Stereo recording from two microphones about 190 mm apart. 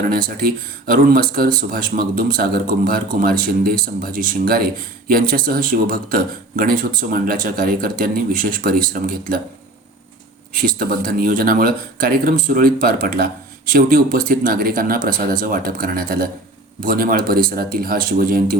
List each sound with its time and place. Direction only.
0.3 s speech: 50° right (ahead or behind)
10.8 s speech: 50° right (ahead or behind)